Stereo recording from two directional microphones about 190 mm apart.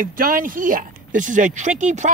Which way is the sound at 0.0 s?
50° right (ahead or behind).